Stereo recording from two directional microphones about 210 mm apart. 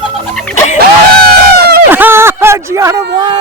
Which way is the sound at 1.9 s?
10° right (ahead or behind).